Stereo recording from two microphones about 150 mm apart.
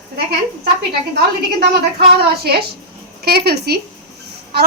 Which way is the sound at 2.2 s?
90° right.